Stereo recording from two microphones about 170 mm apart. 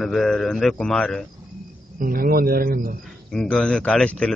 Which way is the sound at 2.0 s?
60° right (ahead or behind).